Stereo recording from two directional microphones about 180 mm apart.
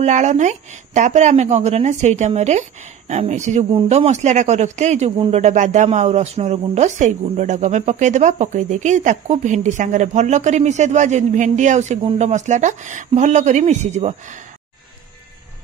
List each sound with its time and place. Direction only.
0.0 s speech: 40° right (ahead or behind)